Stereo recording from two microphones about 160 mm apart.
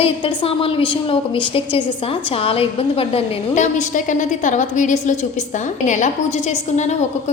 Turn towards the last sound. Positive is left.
turn(degrees=45)  # may be behind; listen again after turning